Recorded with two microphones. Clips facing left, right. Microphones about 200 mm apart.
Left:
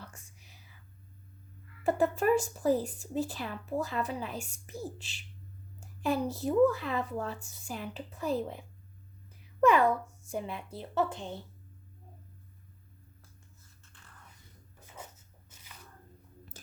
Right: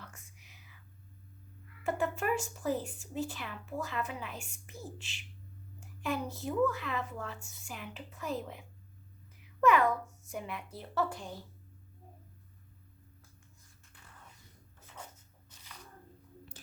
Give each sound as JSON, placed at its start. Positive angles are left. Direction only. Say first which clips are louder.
{"t": 0.0, "sound": "whispering", "louder": "left 3 dB", "side_deg": 35}
{"t": 1.8, "sound": "a child's voice", "louder": "left 6 dB", "side_deg": 35}